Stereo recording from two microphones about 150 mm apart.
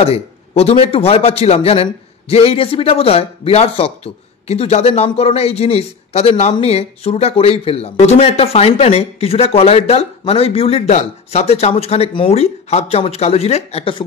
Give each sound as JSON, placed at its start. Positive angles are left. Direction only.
{"t": 0.0, "sound": "a man's voice", "side_deg": 40}